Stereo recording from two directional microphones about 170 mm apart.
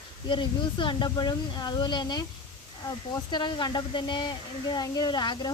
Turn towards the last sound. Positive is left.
turn(degrees=25)  # may be behind; listen again after turning